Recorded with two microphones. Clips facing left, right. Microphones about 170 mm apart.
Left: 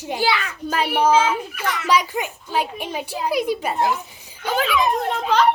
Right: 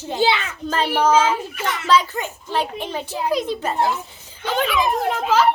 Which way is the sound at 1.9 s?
10° left (ahead or behind).